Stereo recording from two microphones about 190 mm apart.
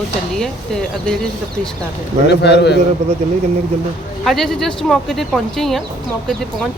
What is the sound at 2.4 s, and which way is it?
Speech, 60° left (ahead or behind).